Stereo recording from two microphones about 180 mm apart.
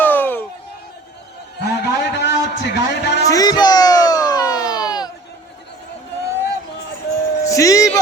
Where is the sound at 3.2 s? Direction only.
20° left (ahead or behind).